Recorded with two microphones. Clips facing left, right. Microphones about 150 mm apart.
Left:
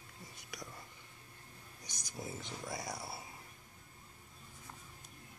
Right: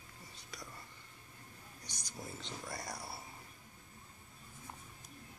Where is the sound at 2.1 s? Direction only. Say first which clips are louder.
Left 2 dB; 10° left (ahead or behind).